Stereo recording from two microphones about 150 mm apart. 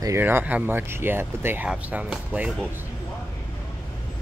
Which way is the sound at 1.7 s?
5° right (ahead or behind).